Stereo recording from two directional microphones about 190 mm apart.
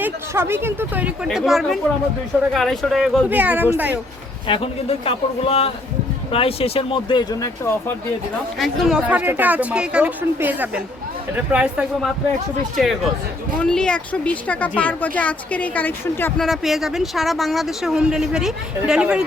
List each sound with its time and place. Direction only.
0.0 s speech: 10° right (ahead or behind)
4.4 s speech: 30° left (ahead or behind)
8.5 s speech: centre (ahead or behind)
16.5 s speech: centre (ahead or behind)